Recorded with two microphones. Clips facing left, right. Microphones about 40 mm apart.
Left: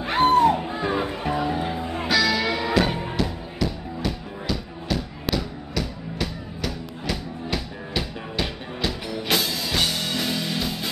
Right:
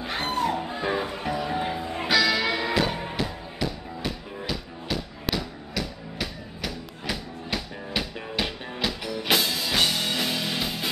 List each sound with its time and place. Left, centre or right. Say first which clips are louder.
0.2 s music: left 11 dB; left
0.5 s music: left 4 dB; centre
1.5 s music: left 2 dB; centre